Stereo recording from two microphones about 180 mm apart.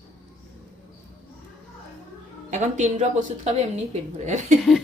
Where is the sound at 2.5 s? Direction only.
40° right (ahead or behind).